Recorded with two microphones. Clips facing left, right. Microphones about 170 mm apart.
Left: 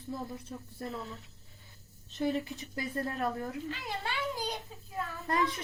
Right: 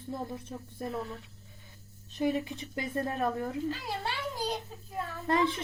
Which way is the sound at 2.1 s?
15° right (ahead or behind).